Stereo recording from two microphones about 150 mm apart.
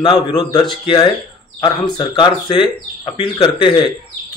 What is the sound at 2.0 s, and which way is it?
Speech, 30° left (ahead or behind).